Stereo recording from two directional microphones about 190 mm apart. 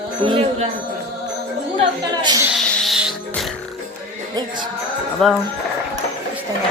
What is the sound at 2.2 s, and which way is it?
Speech, 20° right (ahead or behind).